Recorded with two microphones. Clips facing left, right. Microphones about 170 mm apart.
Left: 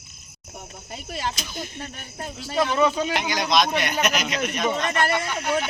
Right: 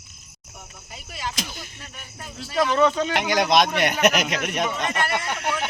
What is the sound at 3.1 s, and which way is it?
Speech, 60° right (ahead or behind).